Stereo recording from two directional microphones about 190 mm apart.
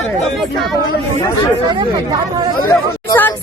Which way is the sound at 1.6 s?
20° right (ahead or behind).